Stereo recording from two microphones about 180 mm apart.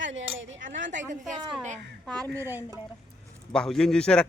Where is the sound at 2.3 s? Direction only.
10° right (ahead or behind).